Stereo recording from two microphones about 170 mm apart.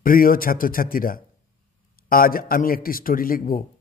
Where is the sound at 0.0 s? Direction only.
55° left (ahead or behind).